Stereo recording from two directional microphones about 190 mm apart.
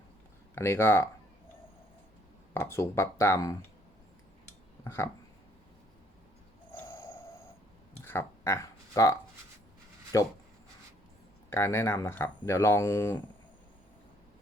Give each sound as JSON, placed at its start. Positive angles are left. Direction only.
{"t": 0.5, "sound": "speech", "side_deg": 15}
{"t": 2.5, "sound": "speech", "side_deg": 15}
{"t": 4.8, "sound": "speech", "side_deg": 15}
{"t": 6.7, "sound": "a sound", "side_deg": 15}
{"t": 8.9, "sound": "speech", "side_deg": 15}
{"t": 10.1, "sound": "speech", "side_deg": 15}
{"t": 11.5, "sound": "speech", "side_deg": 15}